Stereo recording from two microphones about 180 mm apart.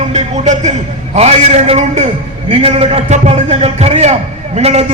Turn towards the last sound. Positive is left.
turn(degrees=-35)  # may be behind; listen again after turning